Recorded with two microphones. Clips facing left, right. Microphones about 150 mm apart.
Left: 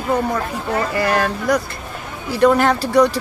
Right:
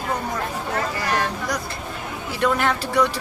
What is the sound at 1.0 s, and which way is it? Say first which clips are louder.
Speech: left 6 dB; 60° left (ahead or behind).